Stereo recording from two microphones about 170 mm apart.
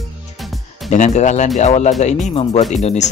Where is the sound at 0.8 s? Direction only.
45° left (ahead or behind).